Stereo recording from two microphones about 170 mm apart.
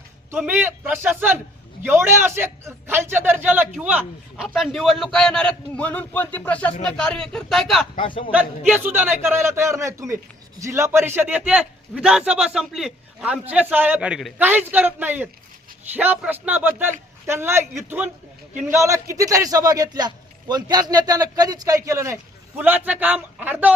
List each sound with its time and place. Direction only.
0.3 s a man's voice: 10° right (ahead or behind)
7.9 s a man's voice: 30° left (ahead or behind)
8.3 s a man's voice: 5° right (ahead or behind)